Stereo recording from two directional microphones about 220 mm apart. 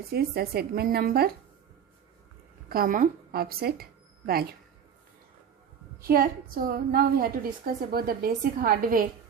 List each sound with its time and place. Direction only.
0.1 s speech: 45° right (ahead or behind)
2.6 s speech: 40° right (ahead or behind)
6.0 s a woman's voice: 40° right (ahead or behind)